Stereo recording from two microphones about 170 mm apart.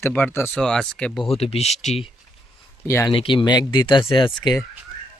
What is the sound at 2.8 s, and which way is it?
Speech, 15° left (ahead or behind).